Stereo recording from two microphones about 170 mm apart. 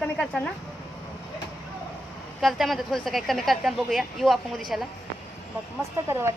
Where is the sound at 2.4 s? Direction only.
Centre (ahead or behind).